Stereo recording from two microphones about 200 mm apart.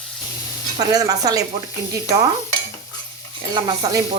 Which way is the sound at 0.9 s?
20° right (ahead or behind).